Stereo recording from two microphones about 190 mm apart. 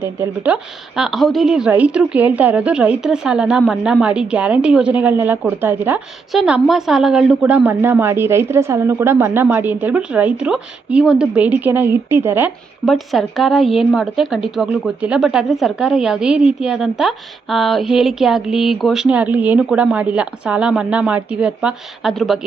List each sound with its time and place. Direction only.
0.0 s a woman's voice: 10° right (ahead or behind)
12.8 s a woman's voice: centre (ahead or behind)